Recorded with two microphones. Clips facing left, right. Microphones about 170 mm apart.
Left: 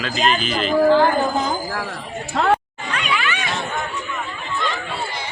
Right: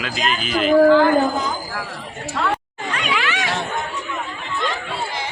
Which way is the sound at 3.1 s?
85° right.